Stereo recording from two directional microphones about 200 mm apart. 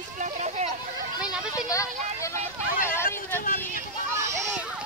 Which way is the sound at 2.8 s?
10° left (ahead or behind).